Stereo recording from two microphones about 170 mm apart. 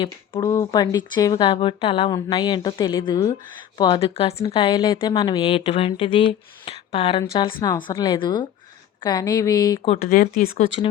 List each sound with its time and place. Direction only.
0.0 s a woman's voice: 25° left (ahead or behind)
10.0 s speech: 60° left (ahead or behind)